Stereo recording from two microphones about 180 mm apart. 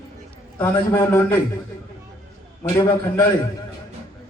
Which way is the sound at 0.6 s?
10° left (ahead or behind).